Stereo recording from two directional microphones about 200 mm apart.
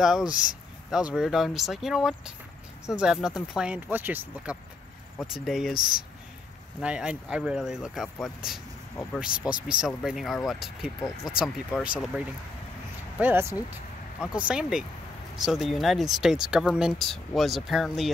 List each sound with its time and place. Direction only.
0.0 s speech: centre (ahead or behind)
0.3 s speech: 40° left (ahead or behind)
0.8 s speech: centre (ahead or behind)
6.8 s speech: 5° right (ahead or behind)
9.7 s speech: 5° right (ahead or behind)